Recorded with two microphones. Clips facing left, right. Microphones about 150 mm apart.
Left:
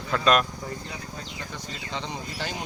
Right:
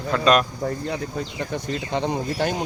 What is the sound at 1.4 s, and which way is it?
Speech, 55° right (ahead or behind).